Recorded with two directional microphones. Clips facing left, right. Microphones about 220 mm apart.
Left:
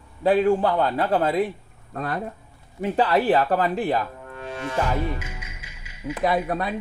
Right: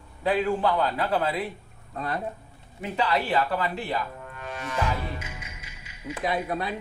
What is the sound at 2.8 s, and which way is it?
Speech, 50° left (ahead or behind).